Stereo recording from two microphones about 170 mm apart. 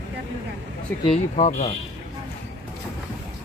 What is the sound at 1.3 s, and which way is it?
Speech, 40° left (ahead or behind).